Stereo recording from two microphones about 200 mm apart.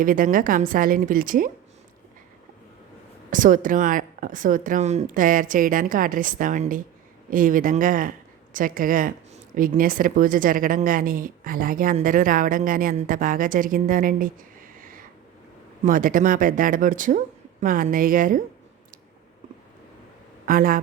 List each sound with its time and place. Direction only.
0.0 s speech: 45° right (ahead or behind)
3.2 s speech: 40° right (ahead or behind)
20.4 s a man's voice: 45° right (ahead or behind)